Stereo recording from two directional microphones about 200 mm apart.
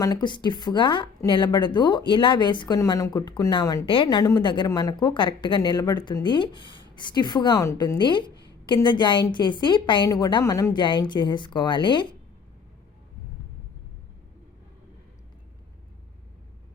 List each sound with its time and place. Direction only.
0.0 s a woman's voice: 20° left (ahead or behind)